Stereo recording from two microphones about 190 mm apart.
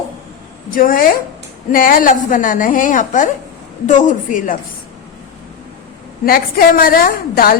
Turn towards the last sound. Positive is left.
turn(degrees=50)  # may be behind; listen again after turning